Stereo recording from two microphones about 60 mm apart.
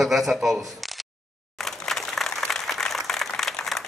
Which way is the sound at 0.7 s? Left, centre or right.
Centre.